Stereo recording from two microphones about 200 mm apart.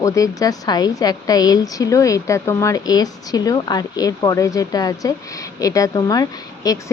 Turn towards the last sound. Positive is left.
turn(degrees=20)  # may be behind; listen again after turning